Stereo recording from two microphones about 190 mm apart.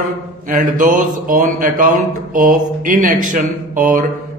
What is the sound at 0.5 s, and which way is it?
Speech, 45° right (ahead or behind).